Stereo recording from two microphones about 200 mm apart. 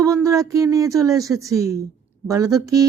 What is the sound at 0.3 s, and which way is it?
A woman's voice, 15° right (ahead or behind).